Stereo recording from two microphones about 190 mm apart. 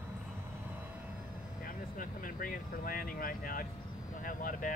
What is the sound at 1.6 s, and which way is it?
Vehicle, 45° left (ahead or behind).